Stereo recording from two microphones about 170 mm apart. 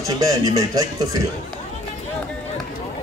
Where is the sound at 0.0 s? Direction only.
20° right (ahead or behind).